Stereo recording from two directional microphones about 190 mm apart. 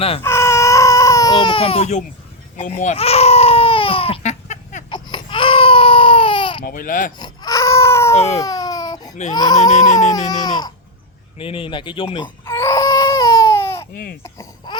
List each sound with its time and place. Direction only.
0.2 s baby cry: 15° left (ahead or behind); by 4.8 s 40° left (ahead or behind)
4.9 s baby cry: 25° left (ahead or behind)
6.7 s speech: 45° left (ahead or behind)
7.2 s baby cry: 20° left (ahead or behind)
8.1 s baby cry: 35° left (ahead or behind)
8.4 s baby cry: 20° left (ahead or behind)
9.3 s speech: 20° left (ahead or behind)
9.6 s a sound: 40° left (ahead or behind)
10.1 s baby cry: 20° left (ahead or behind)
11.3 s speech: 30° left (ahead or behind)
12.5 s baby cry: 15° left (ahead or behind)